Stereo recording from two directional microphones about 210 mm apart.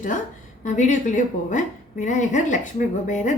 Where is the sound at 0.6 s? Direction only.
35° left (ahead or behind).